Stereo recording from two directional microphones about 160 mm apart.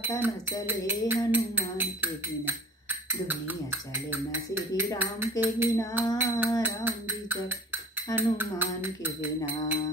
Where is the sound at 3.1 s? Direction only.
10° right (ahead or behind).